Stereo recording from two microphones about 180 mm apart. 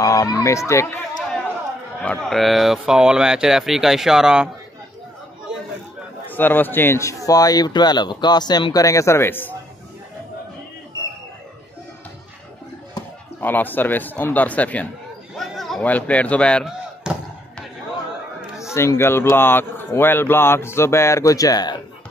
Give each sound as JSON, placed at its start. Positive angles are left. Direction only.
{"t": 0.0, "sound": "speech", "side_deg": 20}
{"t": 2.0, "sound": "speech", "side_deg": 0}
{"t": 6.3, "sound": "speech", "side_deg": 10}
{"t": 12.9, "sound": "speech", "side_deg": 10}
{"t": 17.0, "sound": "a sound", "side_deg": -5}
{"t": 18.6, "sound": "speech", "side_deg": 15}